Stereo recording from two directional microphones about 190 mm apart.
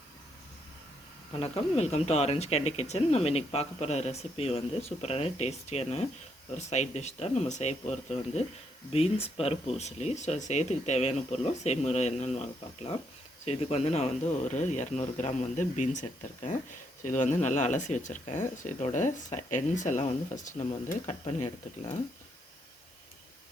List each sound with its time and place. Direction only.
1.4 s speech: 35° left (ahead or behind)